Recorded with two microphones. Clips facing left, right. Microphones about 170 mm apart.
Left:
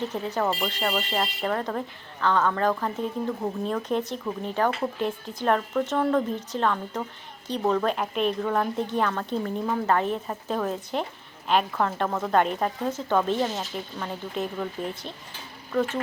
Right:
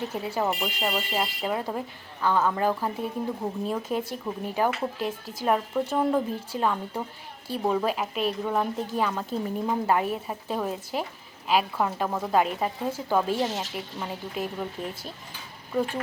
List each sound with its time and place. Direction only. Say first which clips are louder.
0.1 s a woman's voice: left 1 dB; 10° right (ahead or behind)